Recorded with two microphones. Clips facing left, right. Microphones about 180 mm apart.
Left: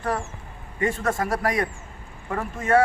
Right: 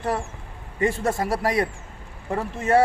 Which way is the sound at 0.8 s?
30° right (ahead or behind).